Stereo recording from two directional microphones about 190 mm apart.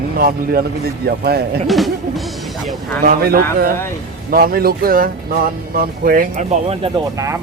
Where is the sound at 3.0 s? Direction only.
50° right (ahead or behind); by 7.0 s 30° right (ahead or behind).